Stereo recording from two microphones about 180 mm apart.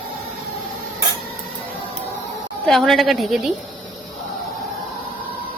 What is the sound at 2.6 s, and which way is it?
Speech, centre (ahead or behind).